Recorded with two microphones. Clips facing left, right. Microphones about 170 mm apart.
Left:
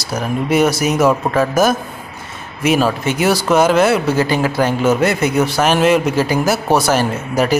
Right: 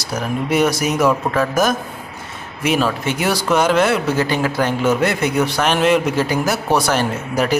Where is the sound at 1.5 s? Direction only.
5° left (ahead or behind).